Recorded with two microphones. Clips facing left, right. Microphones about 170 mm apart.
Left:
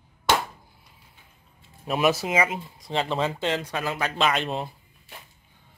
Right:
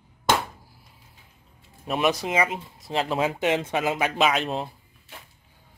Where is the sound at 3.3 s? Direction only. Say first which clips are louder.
Right 3 dB; 15° right (ahead or behind).